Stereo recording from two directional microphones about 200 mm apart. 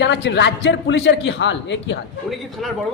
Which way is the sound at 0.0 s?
60° left (ahead or behind).